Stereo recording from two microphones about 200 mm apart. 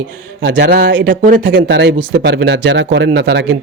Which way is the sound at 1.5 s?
60° right (ahead or behind).